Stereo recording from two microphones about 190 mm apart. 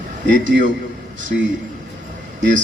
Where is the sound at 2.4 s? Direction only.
40° right (ahead or behind).